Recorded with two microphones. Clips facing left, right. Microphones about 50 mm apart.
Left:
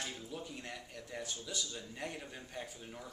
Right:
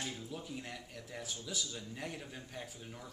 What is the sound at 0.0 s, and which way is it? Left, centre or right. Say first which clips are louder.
Speech: even; centre.